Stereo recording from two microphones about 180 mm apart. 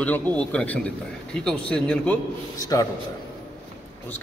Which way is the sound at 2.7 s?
20° left (ahead or behind).